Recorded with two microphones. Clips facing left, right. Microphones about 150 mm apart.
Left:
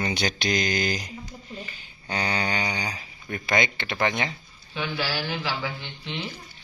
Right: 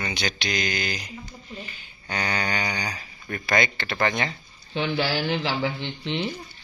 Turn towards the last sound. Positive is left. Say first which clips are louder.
# right 6 dB
turn(degrees=-25)  # may be behind; listen again after turning